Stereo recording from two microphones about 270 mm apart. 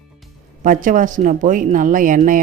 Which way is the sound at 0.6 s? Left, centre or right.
Right.